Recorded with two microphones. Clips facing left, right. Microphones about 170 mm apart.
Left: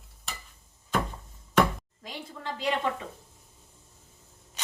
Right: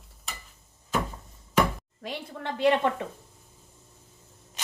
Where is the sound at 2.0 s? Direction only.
65° right (ahead or behind).